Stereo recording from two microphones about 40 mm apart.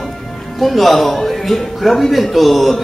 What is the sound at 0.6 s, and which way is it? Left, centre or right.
A man's voice, centre.